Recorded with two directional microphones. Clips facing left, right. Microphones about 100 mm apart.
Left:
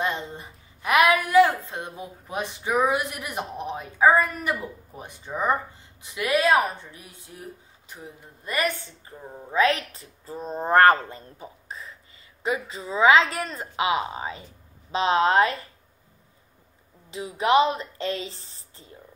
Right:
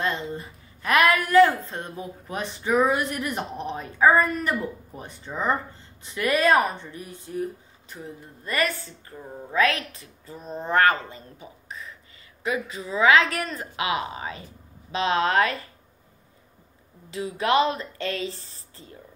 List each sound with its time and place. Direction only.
0.0 s a woman's voice: 20° left (ahead or behind)
8.5 s speech: 15° left (ahead or behind)
17.1 s speech: 20° left (ahead or behind)